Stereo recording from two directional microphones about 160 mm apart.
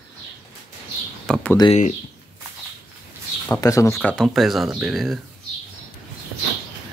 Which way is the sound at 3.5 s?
20° left (ahead or behind).